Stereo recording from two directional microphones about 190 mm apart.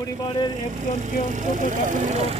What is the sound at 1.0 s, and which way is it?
Speech, 40° right (ahead or behind).